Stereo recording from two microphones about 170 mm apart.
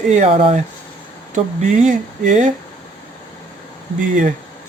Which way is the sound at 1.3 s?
45° right (ahead or behind).